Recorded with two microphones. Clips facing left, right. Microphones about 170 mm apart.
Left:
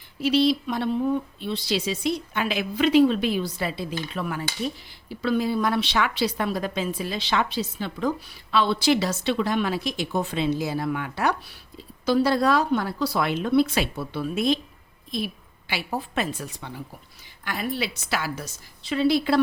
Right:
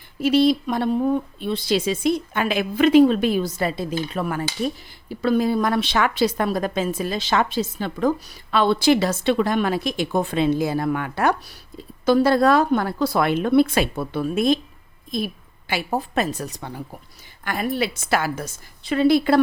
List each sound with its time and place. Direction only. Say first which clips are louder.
0.2 s a woman's voice: right 4 dB; 50° right (ahead or behind)